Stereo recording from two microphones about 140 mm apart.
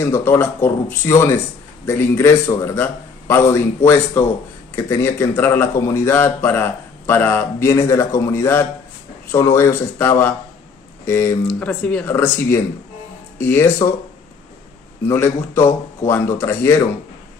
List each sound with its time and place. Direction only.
0.0 s a man's voice: 15° left (ahead or behind)
15.0 s a man's voice: 20° left (ahead or behind)